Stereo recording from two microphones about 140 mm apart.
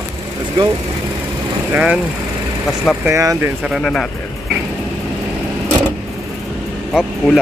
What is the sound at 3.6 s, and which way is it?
Speech, centre (ahead or behind).